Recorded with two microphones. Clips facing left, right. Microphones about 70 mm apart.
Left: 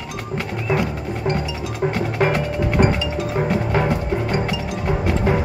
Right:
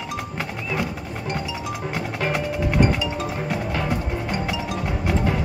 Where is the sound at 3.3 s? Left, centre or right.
Left.